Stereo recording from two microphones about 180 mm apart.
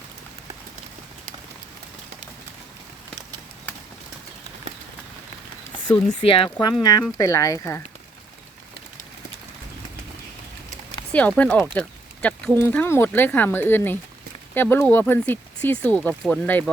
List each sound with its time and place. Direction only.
6.1 s speech: 30° left (ahead or behind)
7.2 s speech: 15° left (ahead or behind)
11.1 s speech: 5° left (ahead or behind)